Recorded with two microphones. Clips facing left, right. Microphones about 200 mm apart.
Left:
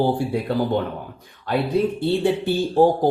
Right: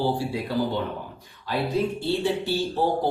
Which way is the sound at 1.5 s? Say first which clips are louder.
Left 4 dB; 55° left (ahead or behind).